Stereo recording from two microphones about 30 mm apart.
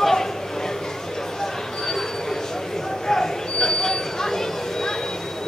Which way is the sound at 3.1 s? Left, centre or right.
Centre.